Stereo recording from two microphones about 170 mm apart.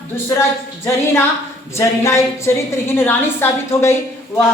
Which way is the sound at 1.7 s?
15° left (ahead or behind).